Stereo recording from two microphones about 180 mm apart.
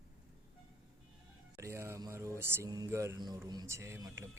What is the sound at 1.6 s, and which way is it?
A man's voice, 15° right (ahead or behind).